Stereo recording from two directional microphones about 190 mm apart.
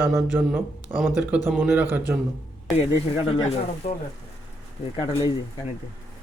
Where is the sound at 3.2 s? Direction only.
30° left (ahead or behind).